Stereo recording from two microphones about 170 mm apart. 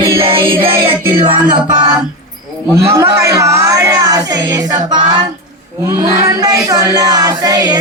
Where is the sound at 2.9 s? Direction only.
20° right (ahead or behind).